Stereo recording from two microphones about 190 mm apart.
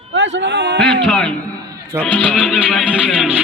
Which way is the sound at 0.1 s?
70° right (ahead or behind).